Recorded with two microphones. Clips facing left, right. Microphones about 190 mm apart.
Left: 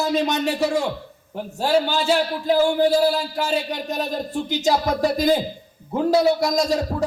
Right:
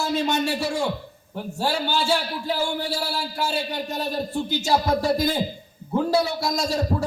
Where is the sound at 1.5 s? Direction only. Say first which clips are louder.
Left 5 dB; 20° left (ahead or behind).